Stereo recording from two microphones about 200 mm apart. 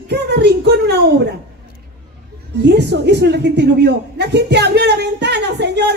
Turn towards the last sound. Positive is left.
turn(degrees=-55)  # may be behind; listen again after turning